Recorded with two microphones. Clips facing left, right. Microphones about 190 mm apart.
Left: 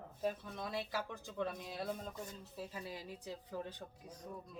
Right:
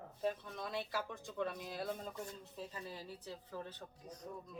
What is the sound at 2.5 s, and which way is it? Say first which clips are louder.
Speech: left 2 dB; 10° left (ahead or behind).